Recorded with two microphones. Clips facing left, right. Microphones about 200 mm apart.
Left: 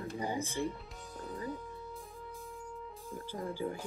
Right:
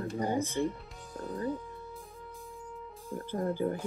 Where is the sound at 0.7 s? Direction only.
Centre (ahead or behind).